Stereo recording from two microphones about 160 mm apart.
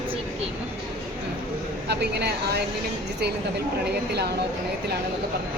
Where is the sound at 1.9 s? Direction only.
90° right.